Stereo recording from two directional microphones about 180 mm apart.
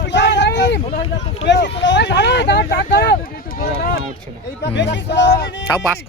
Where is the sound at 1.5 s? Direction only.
75° left (ahead or behind); by 4.0 s 55° left (ahead or behind).